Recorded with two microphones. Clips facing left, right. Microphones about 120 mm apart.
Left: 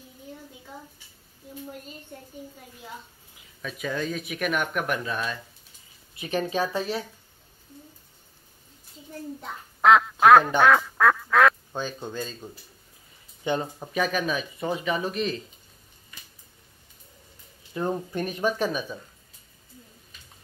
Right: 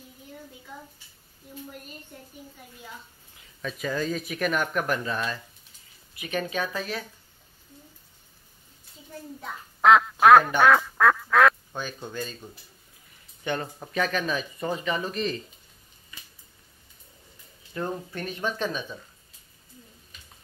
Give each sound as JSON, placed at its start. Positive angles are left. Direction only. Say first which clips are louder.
{"t": 3.6, "sound": "speech", "louder": "right 1 dB", "side_deg": 0}
{"t": 6.1, "sound": "speech", "louder": "left 3 dB", "side_deg": 35}
{"t": 9.8, "sound": "duck", "louder": "even", "side_deg": 0}
{"t": 10.2, "sound": "speech", "louder": "even", "side_deg": 0}
{"t": 10.6, "sound": "duck", "louder": "even", "side_deg": 0}
{"t": 11.7, "sound": "speech", "louder": "left 2 dB", "side_deg": 15}
{"t": 13.4, "sound": "speech", "louder": "left 3 dB", "side_deg": 15}
{"t": 17.7, "sound": "speech", "louder": "left 4 dB", "side_deg": 20}